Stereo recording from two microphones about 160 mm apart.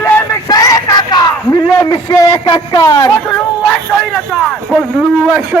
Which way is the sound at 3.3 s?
5° left (ahead or behind).